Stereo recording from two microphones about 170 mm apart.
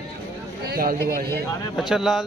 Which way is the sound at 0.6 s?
65° right (ahead or behind).